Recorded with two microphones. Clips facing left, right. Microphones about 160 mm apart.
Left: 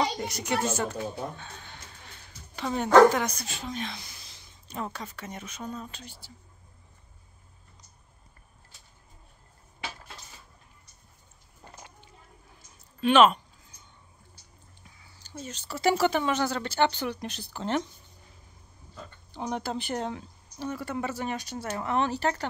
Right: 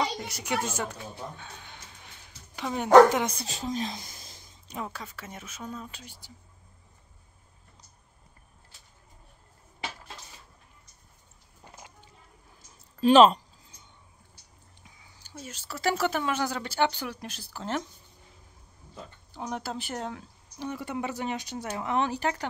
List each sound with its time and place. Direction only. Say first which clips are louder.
0.3 s speech: left 3 dB; 10° right (ahead or behind); by 4.5 s 45° right (ahead or behind)
4.6 s speech: left 2 dB; 5° right (ahead or behind)
13.0 s speech: right 2 dB; 35° right (ahead or behind)
14.8 s speech: right 1 dB; 15° right (ahead or behind)
19.3 s speech: left 3 dB; 5° right (ahead or behind)
20.5 s speech: left 1 dB; 15° right (ahead or behind)